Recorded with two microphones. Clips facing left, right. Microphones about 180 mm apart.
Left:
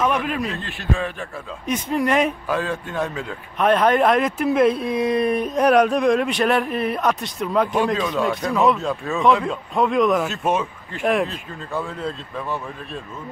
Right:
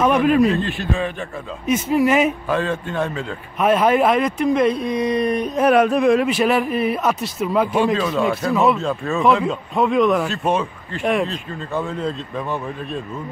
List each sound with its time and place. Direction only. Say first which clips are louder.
0.0 s a man's voice: right 7 dB; 45° right (ahead or behind)
1.7 s speech: right 4 dB; 5° right (ahead or behind)
2.5 s speech: right 3 dB; 10° left (ahead or behind)
3.5 s speech: right 1 dB; 5° right (ahead or behind)